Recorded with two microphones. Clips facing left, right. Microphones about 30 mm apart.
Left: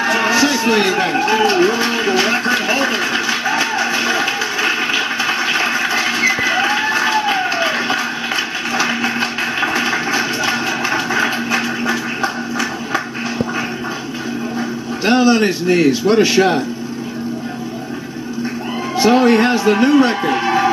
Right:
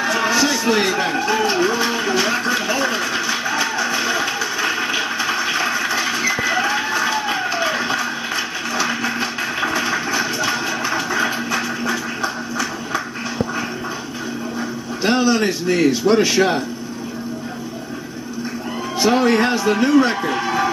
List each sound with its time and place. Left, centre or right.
0.0 s music: centre
15.0 s a man's voice: centre
18.9 s a sound: centre